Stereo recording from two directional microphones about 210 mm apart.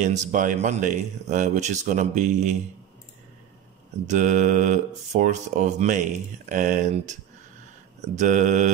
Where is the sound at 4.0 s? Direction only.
35° right (ahead or behind).